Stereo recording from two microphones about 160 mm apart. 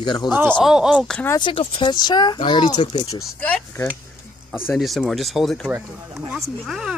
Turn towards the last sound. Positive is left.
turn(degrees=0)  # may be behind; listen again after turning